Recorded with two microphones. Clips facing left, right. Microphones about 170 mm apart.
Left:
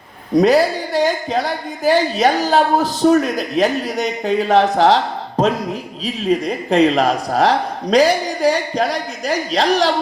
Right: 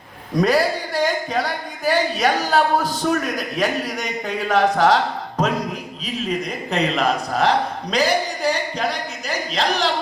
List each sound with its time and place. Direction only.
0.3 s a man's voice: 25° left (ahead or behind)
6.4 s a man's voice: 35° left (ahead or behind)